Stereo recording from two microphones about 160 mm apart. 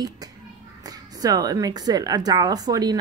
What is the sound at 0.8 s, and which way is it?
Speech, 25° right (ahead or behind).